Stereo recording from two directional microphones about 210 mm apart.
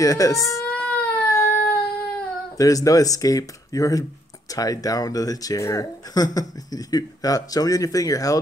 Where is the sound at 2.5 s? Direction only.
15° left (ahead or behind).